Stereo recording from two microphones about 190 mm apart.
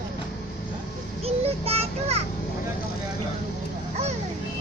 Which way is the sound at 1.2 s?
30° right (ahead or behind).